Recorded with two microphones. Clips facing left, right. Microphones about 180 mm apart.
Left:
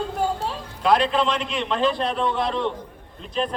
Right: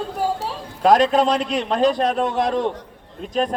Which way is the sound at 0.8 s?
45° right (ahead or behind).